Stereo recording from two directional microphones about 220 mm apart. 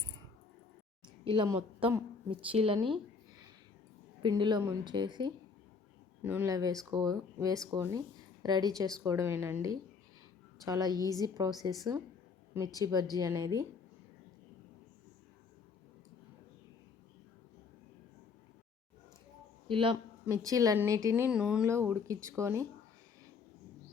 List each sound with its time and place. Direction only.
1.0 s speech: 20° right (ahead or behind)
4.2 s speech: 20° right (ahead or behind)
11.0 s a woman's voice: 15° left (ahead or behind)
11.3 s speech: 20° right (ahead or behind)
19.6 s a man's voice: 25° right (ahead or behind)